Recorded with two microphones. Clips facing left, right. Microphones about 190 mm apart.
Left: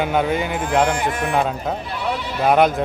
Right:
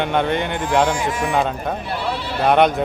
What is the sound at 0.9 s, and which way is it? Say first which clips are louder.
Speech: even; 60° left (ahead or behind).